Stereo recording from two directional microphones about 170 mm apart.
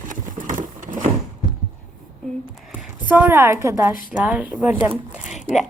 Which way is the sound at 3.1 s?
10° right (ahead or behind).